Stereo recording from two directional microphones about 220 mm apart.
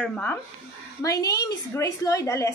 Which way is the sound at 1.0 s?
15° left (ahead or behind).